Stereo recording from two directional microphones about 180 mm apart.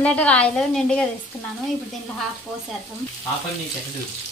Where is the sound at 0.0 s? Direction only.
5° left (ahead or behind).